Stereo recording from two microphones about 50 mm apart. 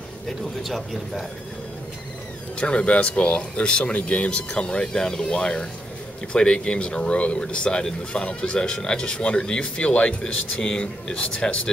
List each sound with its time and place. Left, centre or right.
0.7 s speech: centre
2.6 s speech: left